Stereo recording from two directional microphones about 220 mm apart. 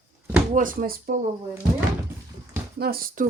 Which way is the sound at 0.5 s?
40° right (ahead or behind).